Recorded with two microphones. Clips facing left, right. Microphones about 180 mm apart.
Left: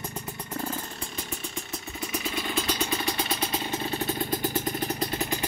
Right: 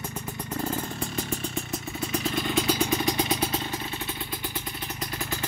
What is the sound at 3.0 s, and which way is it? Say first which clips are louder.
Vehicle: right 4 dB; 15° right (ahead or behind).